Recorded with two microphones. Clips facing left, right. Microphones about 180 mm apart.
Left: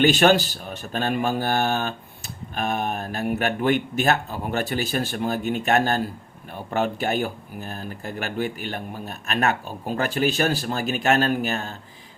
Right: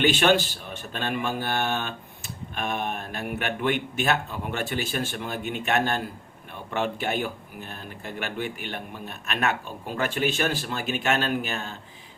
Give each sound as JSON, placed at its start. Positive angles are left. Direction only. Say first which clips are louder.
{"t": 0.0, "sound": "speech", "louder": "left 4 dB", "side_deg": 40}